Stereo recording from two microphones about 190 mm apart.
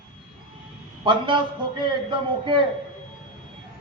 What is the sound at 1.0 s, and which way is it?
Speech, 25° right (ahead or behind).